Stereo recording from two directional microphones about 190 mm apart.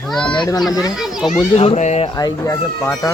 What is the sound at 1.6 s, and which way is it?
Speech, 35° left (ahead or behind).